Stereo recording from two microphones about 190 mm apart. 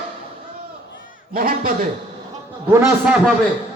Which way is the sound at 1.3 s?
50° right (ahead or behind).